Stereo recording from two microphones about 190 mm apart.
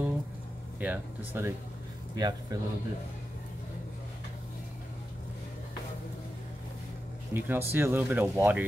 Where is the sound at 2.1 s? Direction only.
20° right (ahead or behind).